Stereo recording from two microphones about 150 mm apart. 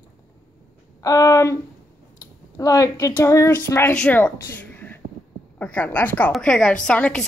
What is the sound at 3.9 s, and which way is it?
A woman's voice, 5° left (ahead or behind).